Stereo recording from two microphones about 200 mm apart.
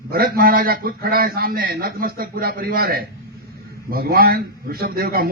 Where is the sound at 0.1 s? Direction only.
50° right (ahead or behind).